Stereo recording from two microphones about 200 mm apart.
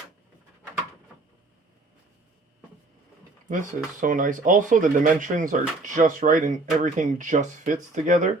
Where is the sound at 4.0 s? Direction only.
40° right (ahead or behind).